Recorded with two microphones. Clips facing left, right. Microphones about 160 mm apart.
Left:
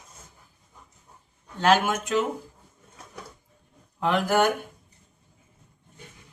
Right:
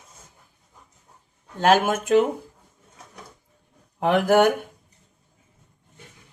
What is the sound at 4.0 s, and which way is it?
Speech, 55° right (ahead or behind).